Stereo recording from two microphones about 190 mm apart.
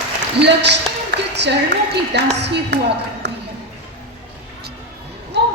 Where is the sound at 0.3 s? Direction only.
65° right (ahead or behind).